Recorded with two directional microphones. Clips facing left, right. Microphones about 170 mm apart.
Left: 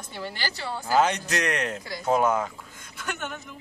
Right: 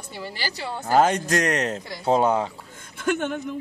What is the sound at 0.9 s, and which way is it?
Speech, 45° right (ahead or behind).